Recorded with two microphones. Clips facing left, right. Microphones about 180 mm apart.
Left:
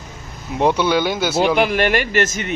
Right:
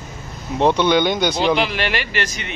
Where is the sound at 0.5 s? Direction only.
10° left (ahead or behind).